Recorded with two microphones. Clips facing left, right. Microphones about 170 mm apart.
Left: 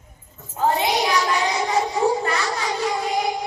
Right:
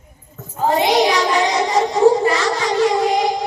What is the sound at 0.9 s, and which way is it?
Child singing, 90° right.